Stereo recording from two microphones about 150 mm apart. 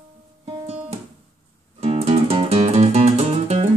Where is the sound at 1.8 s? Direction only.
45° right (ahead or behind).